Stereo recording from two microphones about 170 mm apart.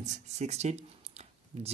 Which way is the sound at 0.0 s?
45° right (ahead or behind).